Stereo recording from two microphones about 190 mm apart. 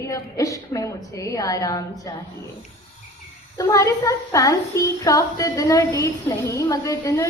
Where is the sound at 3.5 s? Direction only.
15° left (ahead or behind).